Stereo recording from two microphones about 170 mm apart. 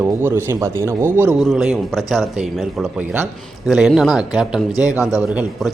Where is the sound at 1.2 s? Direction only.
5° right (ahead or behind).